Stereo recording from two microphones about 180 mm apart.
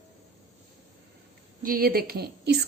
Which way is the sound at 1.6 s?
55° right (ahead or behind).